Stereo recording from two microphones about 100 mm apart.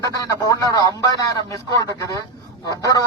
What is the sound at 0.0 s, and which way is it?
Speech, 35° left (ahead or behind).